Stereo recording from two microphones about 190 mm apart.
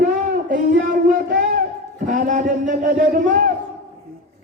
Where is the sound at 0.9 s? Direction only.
45° right (ahead or behind).